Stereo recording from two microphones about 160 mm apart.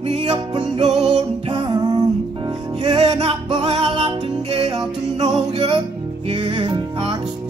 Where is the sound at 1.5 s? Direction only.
30° right (ahead or behind).